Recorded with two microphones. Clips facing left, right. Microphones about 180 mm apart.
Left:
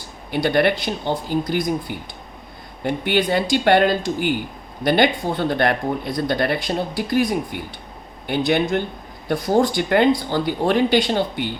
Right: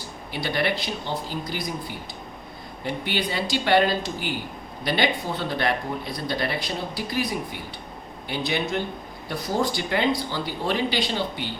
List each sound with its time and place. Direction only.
0.3 s speech: 55° left (ahead or behind)
2.8 s speech: 55° left (ahead or behind)